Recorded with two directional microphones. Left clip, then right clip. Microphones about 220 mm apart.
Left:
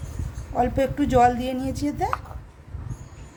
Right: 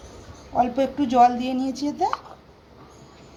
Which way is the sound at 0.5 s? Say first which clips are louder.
Right 1 dB; 25° left (ahead or behind).